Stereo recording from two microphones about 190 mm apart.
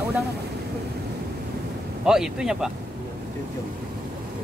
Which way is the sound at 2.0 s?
5° right (ahead or behind).